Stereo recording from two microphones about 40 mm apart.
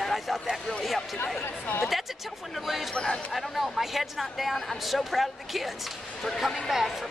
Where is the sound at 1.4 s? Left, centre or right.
Left.